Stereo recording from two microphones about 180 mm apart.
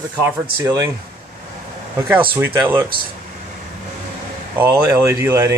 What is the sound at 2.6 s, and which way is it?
Speech, 10° right (ahead or behind).